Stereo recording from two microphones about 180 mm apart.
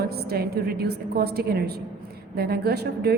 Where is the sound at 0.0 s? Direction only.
60° right (ahead or behind).